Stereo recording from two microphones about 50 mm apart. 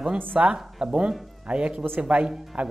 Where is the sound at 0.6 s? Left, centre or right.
Centre.